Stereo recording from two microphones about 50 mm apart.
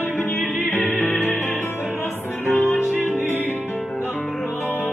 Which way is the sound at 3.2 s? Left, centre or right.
Left.